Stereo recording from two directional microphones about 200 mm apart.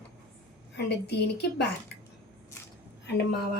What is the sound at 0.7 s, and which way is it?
A woman's voice, 60° left (ahead or behind).